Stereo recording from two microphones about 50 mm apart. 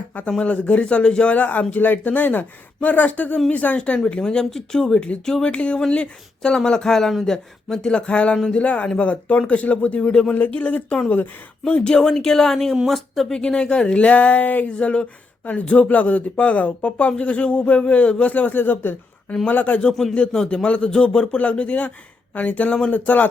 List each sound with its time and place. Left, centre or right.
0.3 s a man's voice: left
5.5 s speech: left
10.3 s a man's voice: left
11.8 s a man's voice: centre; by 19.8 s left
19.9 s speech: centre
20.1 s a man's voice: centre; by 23.3 s left